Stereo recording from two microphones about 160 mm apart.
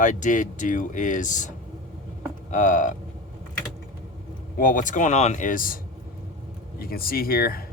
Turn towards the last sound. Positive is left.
turn(degrees=70)  # may be behind; listen again after turning